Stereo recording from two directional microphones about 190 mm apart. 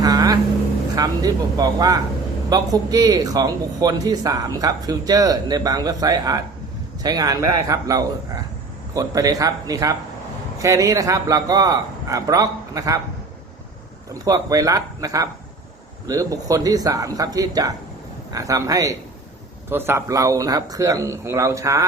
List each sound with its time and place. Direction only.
0.0 s vehicle: 20° right (ahead or behind)
0.9 s a man's voice: 20° right (ahead or behind)
14.1 s a man's voice: 20° right (ahead or behind)